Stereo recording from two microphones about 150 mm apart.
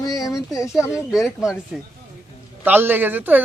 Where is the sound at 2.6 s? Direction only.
15° right (ahead or behind).